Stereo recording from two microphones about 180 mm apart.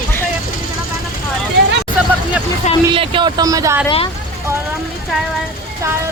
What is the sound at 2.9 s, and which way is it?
Speech, 30° right (ahead or behind).